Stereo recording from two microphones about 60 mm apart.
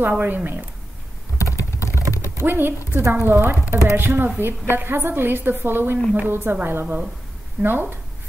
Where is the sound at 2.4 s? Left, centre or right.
Right.